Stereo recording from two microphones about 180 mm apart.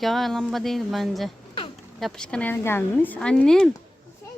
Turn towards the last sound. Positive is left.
turn(degrees=5)  # may be behind; listen again after turning